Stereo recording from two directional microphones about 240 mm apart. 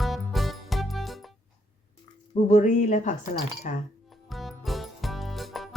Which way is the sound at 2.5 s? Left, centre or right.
Left.